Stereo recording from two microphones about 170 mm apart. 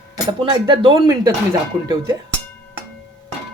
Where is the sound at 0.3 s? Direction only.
30° right (ahead or behind).